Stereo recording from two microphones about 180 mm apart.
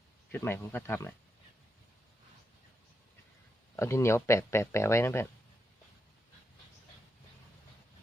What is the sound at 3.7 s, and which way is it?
Speech, 15° left (ahead or behind).